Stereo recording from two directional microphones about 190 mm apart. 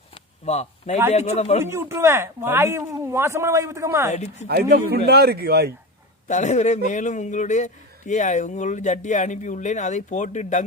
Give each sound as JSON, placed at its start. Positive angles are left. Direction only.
{"t": 0.1, "sound": "a sound", "side_deg": 35}
{"t": 1.1, "sound": "a man's voice", "side_deg": 35}
{"t": 1.6, "sound": "a man's voice", "side_deg": -15}
{"t": 4.1, "sound": "a man's voice", "side_deg": 35}
{"t": 5.0, "sound": "speech", "side_deg": -55}
{"t": 6.2, "sound": "a man's voice", "side_deg": 40}